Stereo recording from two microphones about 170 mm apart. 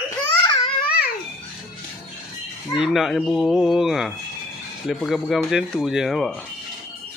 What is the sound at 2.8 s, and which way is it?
Speech, centre (ahead or behind).